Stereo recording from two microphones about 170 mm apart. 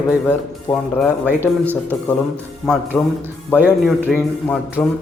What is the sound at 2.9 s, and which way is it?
A man's voice, 5° left (ahead or behind).